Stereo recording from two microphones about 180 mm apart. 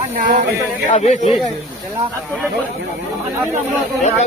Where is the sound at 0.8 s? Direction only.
40° left (ahead or behind).